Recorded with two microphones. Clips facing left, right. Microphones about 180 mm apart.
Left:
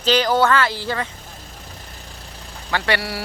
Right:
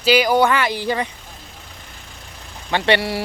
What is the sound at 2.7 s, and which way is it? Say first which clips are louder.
Speech: right 4 dB; 20° right (ahead or behind).